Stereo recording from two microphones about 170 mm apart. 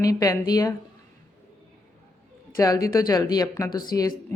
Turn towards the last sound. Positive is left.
turn(degrees=20)  # may be behind; listen again after turning